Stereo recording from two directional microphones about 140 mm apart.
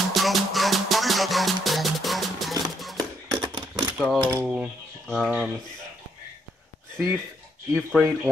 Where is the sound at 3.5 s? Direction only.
30° right (ahead or behind).